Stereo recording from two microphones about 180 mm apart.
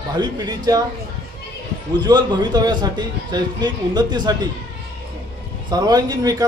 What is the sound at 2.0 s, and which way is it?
A man's voice, 20° right (ahead or behind).